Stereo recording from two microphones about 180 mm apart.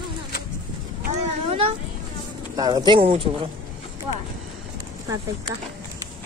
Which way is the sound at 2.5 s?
20° right (ahead or behind).